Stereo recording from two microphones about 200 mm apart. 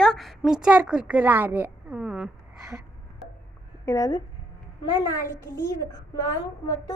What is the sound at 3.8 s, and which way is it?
A woman's voice, 15° left (ahead or behind).